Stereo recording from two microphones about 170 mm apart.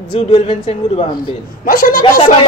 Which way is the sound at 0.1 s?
35° left (ahead or behind).